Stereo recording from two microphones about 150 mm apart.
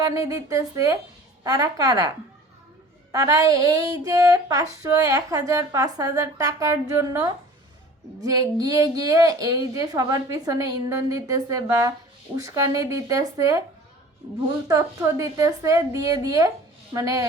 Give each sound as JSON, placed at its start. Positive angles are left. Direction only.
{"t": 0.0, "sound": "a woman's voice", "side_deg": -20}
{"t": 14.7, "sound": "a woman's voice", "side_deg": -25}